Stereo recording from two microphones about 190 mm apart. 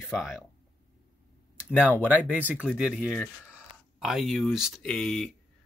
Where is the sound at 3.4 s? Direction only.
5° right (ahead or behind).